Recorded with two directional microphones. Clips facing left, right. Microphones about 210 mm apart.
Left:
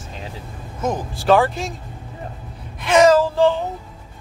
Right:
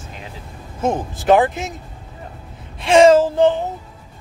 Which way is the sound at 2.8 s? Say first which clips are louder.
Right 3 dB; 30° right (ahead or behind).